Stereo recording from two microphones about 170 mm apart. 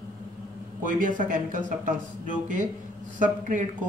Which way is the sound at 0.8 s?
50° right (ahead or behind).